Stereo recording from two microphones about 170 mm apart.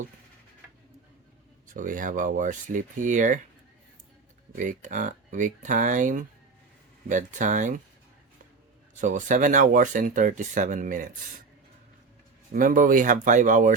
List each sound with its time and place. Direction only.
1.6 s speech: 50° right (ahead or behind)
4.5 s speech: 50° right (ahead or behind)
9.0 s speech: 45° right (ahead or behind)
12.5 s speech: 55° right (ahead or behind)